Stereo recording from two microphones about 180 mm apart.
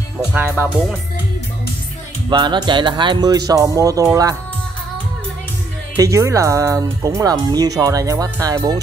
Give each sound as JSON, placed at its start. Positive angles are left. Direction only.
{"t": 0.3, "sound": "speech", "side_deg": -10}
{"t": 2.2, "sound": "speech", "side_deg": -25}
{"t": 5.9, "sound": "speech", "side_deg": -15}